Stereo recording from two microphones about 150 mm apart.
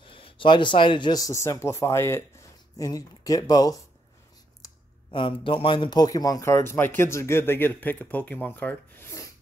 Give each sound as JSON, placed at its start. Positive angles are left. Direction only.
{"t": 0.0, "sound": "speech", "side_deg": 35}
{"t": 5.1, "sound": "speech", "side_deg": 35}